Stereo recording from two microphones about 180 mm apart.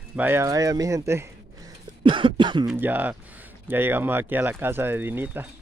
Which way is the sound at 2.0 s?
25° right (ahead or behind).